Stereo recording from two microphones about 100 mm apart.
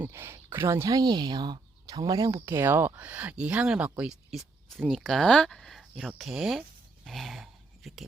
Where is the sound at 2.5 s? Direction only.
25° right (ahead or behind).